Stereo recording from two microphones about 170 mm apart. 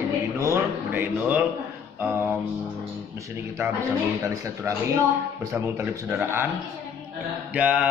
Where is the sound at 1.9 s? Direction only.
10° right (ahead or behind).